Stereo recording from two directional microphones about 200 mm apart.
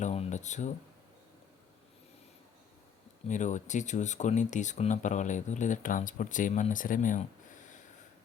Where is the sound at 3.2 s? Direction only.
40° left (ahead or behind).